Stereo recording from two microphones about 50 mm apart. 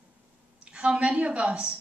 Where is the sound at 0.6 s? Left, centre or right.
Centre.